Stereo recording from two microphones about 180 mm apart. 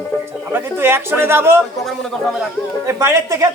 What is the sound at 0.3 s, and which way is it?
Speech, 10° right (ahead or behind).